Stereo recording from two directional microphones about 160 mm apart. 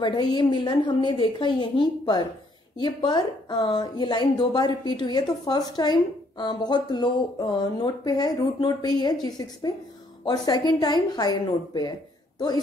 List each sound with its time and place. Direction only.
0.0 s a woman's voice: 25° left (ahead or behind)